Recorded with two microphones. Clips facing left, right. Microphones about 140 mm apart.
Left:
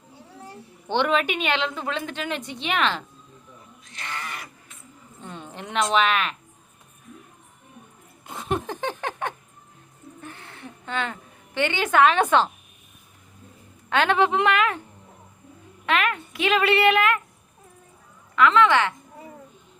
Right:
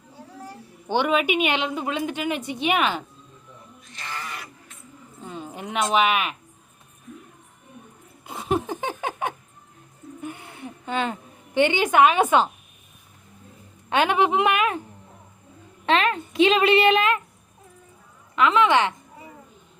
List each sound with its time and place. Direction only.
0.9 s a woman's voice: 10° right (ahead or behind)
5.2 s speech: 5° right (ahead or behind)
8.3 s a sound: centre (ahead or behind)
13.9 s a woman's voice: 15° right (ahead or behind)
15.9 s a woman's voice: 30° right (ahead or behind)
18.3 s a woman's voice: 20° right (ahead or behind)